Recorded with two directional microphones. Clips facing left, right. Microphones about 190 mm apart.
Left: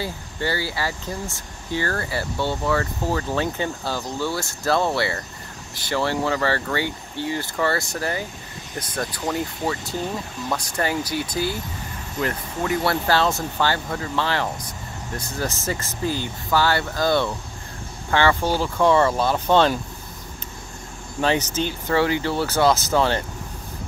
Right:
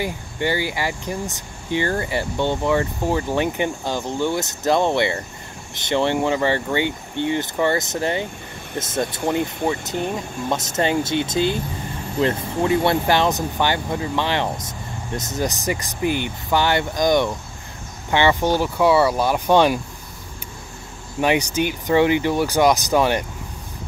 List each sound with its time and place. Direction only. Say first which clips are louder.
0.0 s speech: right 3 dB; 15° right (ahead or behind)
21.2 s speech: right 3 dB; 15° right (ahead or behind)